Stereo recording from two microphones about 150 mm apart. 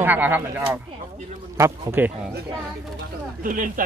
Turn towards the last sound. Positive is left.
turn(degrees=-60)  # may be behind; listen again after turning